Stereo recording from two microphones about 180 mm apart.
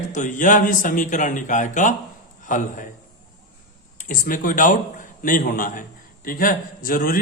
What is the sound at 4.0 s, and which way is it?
A man's voice, 50° left (ahead or behind).